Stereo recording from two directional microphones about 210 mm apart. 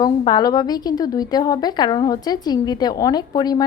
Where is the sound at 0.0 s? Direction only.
20° left (ahead or behind).